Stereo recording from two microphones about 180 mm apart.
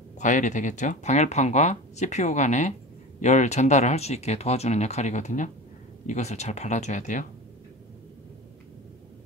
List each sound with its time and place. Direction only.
0.2 s speech: 45° left (ahead or behind)